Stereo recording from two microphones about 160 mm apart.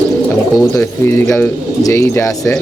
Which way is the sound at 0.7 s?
15° left (ahead or behind).